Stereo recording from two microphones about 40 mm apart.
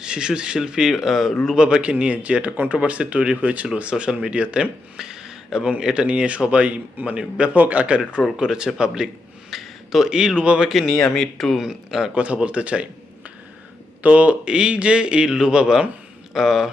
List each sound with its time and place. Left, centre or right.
0.0 s a man's voice: centre
1.5 s a man's voice: right
3.8 s a man's voice: right
4.9 s a sound: centre
5.8 s a man's voice: right
7.5 s a man's voice: right
8.4 s a man's voice: centre
9.5 s a sound: centre
10.1 s a man's voice: centre
10.7 s speech: centre
12.1 s a man's voice: right
14.0 s a man's voice: right
14.4 s a man's voice: right